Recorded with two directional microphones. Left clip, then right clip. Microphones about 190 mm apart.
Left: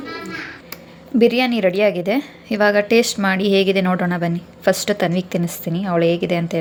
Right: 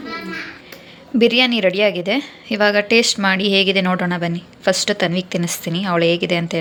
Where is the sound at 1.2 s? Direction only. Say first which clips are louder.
Right 1 dB; centre (ahead or behind).